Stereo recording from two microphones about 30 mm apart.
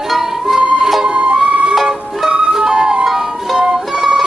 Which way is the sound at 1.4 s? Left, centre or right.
Right.